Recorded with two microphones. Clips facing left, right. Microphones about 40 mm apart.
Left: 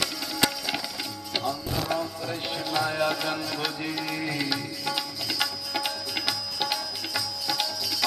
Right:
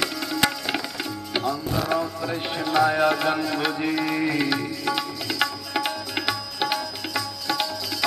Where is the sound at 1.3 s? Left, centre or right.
Centre.